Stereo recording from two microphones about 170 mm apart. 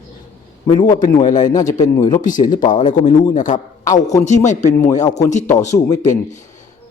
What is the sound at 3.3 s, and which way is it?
Speech, 50° left (ahead or behind).